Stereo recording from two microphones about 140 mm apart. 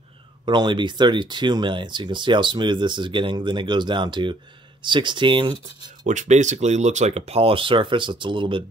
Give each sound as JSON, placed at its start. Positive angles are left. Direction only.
{"t": 0.5, "sound": "speech", "side_deg": -35}
{"t": 6.0, "sound": "speech", "side_deg": -60}